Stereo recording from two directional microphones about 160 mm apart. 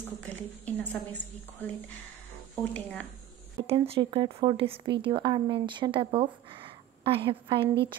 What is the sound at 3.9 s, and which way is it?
Speech, 30° right (ahead or behind).